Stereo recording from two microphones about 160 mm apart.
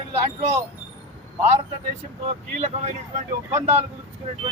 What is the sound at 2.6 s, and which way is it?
Speech, 45° right (ahead or behind).